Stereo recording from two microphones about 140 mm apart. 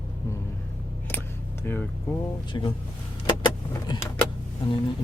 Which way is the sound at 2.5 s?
35° left (ahead or behind).